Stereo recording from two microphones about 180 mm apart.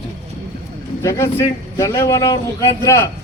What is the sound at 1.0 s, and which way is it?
A man's voice, 15° left (ahead or behind).